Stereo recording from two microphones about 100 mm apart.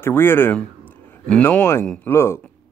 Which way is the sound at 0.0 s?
20° left (ahead or behind).